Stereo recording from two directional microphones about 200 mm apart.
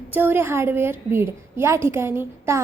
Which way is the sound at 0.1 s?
10° right (ahead or behind).